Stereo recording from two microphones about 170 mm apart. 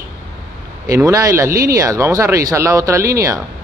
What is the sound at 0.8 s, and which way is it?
Speech, 20° right (ahead or behind).